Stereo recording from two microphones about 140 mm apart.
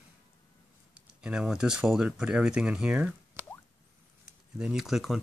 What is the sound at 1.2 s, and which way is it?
Speech, 5° right (ahead or behind).